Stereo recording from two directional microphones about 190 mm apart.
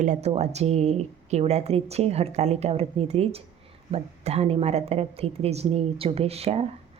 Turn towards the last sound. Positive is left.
turn(degrees=-30)  # may be behind; listen again after turning